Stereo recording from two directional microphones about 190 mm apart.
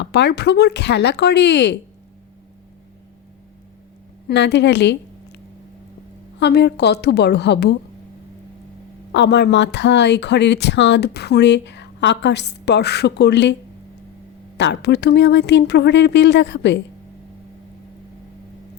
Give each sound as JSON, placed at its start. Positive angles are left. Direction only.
{"t": 0.0, "sound": "speech", "side_deg": 65}
{"t": 4.3, "sound": "speech", "side_deg": 60}
{"t": 6.4, "sound": "speech", "side_deg": 60}
{"t": 9.1, "sound": "speech", "side_deg": 65}
{"t": 14.6, "sound": "speech", "side_deg": 65}